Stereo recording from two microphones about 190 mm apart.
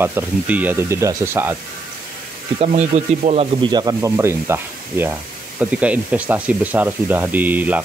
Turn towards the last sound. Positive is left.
turn(degrees=-10)  # may be behind; listen again after turning